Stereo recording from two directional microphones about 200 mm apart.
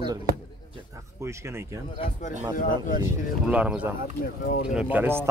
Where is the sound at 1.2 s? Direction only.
10° right (ahead or behind).